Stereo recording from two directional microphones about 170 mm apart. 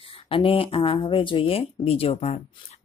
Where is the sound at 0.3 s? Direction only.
30° left (ahead or behind).